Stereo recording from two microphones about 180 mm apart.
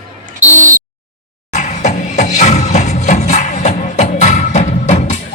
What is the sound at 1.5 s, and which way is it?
Music, 40° left (ahead or behind).